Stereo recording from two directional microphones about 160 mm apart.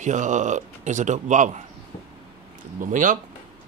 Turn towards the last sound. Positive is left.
turn(degrees=-55)  # may be behind; listen again after turning